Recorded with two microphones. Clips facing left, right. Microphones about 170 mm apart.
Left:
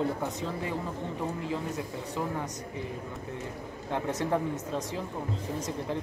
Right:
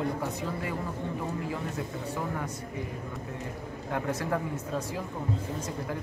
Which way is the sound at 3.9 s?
20° left (ahead or behind).